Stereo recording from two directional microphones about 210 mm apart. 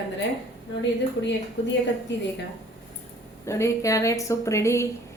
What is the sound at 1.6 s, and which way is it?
Speech, 60° left (ahead or behind).